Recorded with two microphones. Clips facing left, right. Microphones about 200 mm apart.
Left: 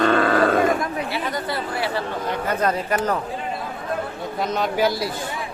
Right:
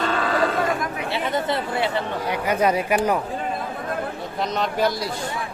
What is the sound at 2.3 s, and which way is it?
Speech, 10° right (ahead or behind).